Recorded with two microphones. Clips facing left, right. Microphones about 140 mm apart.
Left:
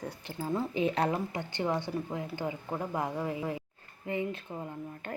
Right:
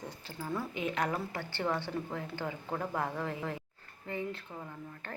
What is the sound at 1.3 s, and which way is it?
Speech, 15° left (ahead or behind).